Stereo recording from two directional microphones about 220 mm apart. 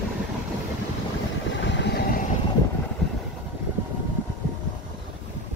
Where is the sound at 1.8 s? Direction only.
40° left (ahead or behind).